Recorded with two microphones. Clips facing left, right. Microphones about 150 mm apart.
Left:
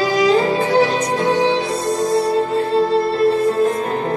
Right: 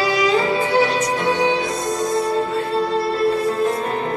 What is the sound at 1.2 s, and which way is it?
Music, 35° left (ahead or behind).